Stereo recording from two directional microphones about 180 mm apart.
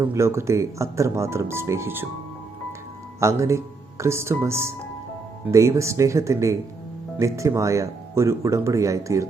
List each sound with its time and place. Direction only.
0.0 s speech: 15° right (ahead or behind)
3.2 s speech: 15° right (ahead or behind)